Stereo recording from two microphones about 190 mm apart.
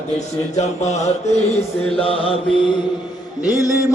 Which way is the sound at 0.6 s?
35° left (ahead or behind).